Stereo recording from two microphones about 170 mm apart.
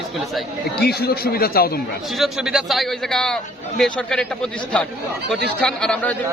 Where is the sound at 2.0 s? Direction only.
Centre (ahead or behind).